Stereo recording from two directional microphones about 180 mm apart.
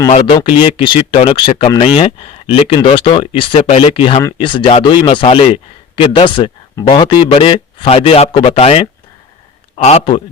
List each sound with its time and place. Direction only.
0.1 s speech: 30° left (ahead or behind)
4.2 s speech: 15° left (ahead or behind)
4.4 s a man's voice: 30° left (ahead or behind)